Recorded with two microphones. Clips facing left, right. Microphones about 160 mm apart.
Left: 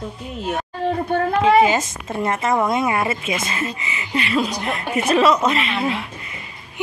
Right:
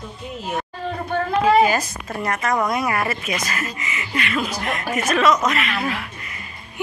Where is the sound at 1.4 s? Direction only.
20° left (ahead or behind).